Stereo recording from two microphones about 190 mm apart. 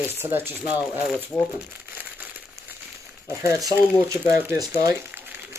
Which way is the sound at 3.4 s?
15° right (ahead or behind).